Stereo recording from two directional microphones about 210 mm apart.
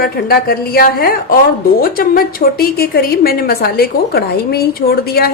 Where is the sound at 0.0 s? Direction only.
45° left (ahead or behind).